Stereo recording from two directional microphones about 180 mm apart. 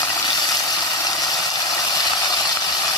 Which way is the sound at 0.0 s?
20° left (ahead or behind).